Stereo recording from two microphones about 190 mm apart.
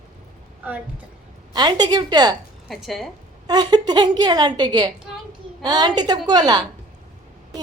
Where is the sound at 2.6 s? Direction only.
Centre (ahead or behind).